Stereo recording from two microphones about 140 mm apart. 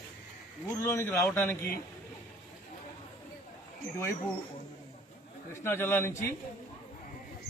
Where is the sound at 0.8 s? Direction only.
20° left (ahead or behind).